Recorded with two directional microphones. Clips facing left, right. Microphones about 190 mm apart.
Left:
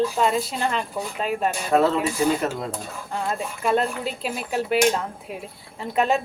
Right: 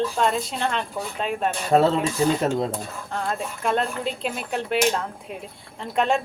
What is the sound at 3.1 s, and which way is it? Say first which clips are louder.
Speech: left 1 dB; 5° left (ahead or behind).